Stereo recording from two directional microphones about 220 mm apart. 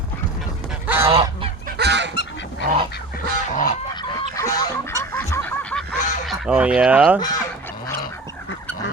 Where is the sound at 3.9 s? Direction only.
15° left (ahead or behind).